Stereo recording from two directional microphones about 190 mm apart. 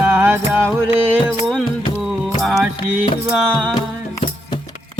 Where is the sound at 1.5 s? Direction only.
Centre (ahead or behind).